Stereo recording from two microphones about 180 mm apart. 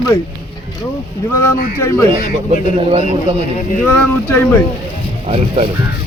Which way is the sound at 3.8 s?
10° left (ahead or behind).